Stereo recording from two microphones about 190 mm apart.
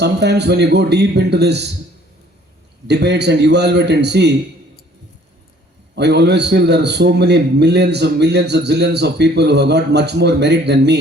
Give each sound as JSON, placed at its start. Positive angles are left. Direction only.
{"t": 0.0, "sound": "a man's voice", "side_deg": -60}
{"t": 2.8, "sound": "a man's voice", "side_deg": -60}
{"t": 6.0, "sound": "a man's voice", "side_deg": -60}